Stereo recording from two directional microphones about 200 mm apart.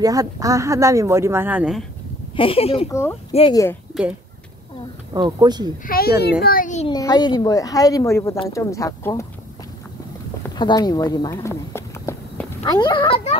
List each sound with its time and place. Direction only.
0.0 s speech: 15° right (ahead or behind)
2.3 s speech: 25° left (ahead or behind)
3.9 s speech: centre (ahead or behind)
5.1 s speech: 20° right (ahead or behind)
5.9 s a child's voice: 50° left (ahead or behind)
6.9 s a woman's voice: 20° left (ahead or behind)
10.5 s speech: 20° left (ahead or behind)